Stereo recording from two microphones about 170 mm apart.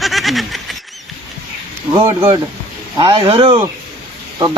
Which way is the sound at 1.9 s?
30° right (ahead or behind).